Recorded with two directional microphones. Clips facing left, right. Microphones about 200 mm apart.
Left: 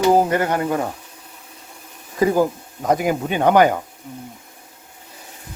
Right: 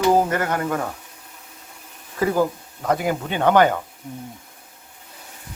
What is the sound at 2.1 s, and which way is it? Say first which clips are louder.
Speech: left 3 dB; 15° left (ahead or behind).